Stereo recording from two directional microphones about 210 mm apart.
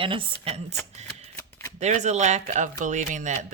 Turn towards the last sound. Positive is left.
turn(degrees=-35)  # may be behind; listen again after turning